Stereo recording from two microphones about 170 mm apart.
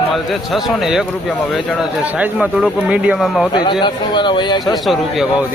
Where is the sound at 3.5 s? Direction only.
25° left (ahead or behind).